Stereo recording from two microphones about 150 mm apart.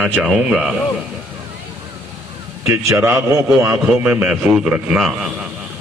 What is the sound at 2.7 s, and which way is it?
Speech, 20° right (ahead or behind).